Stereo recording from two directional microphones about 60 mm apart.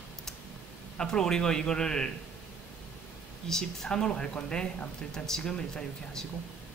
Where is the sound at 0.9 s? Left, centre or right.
Centre.